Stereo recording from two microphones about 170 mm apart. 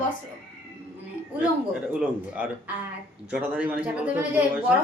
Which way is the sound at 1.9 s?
5° right (ahead or behind).